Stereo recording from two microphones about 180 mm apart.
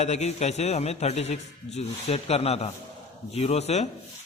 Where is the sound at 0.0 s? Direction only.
35° left (ahead or behind).